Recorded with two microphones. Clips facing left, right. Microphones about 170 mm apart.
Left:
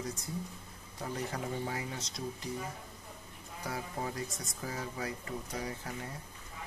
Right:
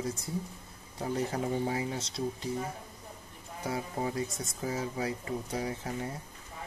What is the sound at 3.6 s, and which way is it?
Speech, 25° right (ahead or behind).